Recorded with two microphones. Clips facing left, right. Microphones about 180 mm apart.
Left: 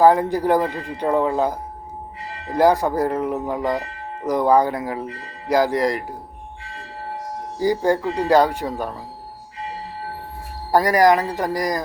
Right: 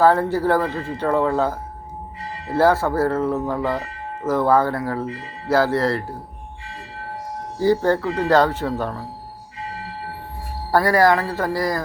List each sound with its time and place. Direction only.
0.0 s speech: 15° left (ahead or behind)
7.6 s speech: 10° left (ahead or behind)
10.7 s speech: 15° left (ahead or behind)